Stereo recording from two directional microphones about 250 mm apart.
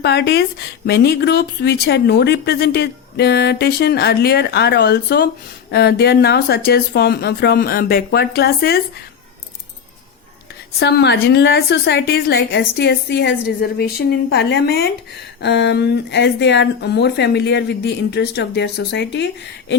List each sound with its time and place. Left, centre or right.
0.0 s a woman's voice: left
10.8 s a woman's voice: left